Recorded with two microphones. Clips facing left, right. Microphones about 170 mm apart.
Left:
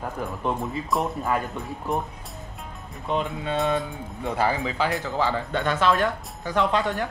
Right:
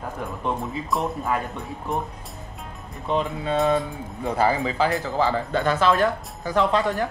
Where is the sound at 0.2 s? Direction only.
Centre (ahead or behind).